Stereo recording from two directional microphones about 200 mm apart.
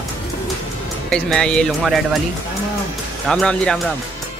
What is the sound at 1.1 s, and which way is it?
Speech, 5° left (ahead or behind).